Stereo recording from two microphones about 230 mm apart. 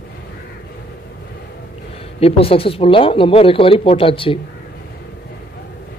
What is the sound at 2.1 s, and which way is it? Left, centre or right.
Speech, left.